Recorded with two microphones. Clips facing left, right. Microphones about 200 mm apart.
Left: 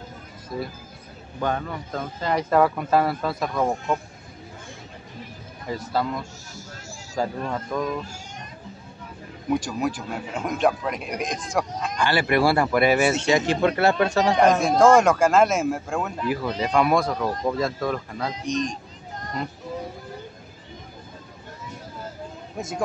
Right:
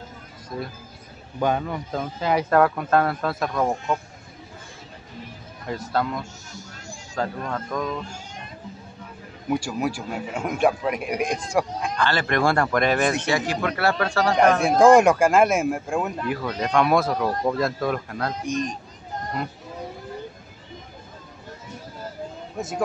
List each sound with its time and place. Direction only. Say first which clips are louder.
0.5 s speech: left 1 dB; 5° left (ahead or behind)
1.4 s speech: right 3 dB; 10° right (ahead or behind)
5.7 s a man's voice: even; centre (ahead or behind)
9.5 s a man's voice: even; 10° right (ahead or behind)
12.0 s speech: left 2 dB; 10° left (ahead or behind)
13.3 s speech: left 4 dB; 25° left (ahead or behind)
14.6 s a man's voice: right 5 dB; 10° right (ahead or behind)
16.3 s speech: even; 5° left (ahead or behind)